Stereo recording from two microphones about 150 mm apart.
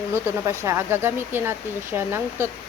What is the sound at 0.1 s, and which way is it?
Speech, 20° right (ahead or behind).